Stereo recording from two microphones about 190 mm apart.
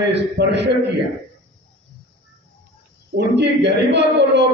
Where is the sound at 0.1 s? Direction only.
65° right (ahead or behind).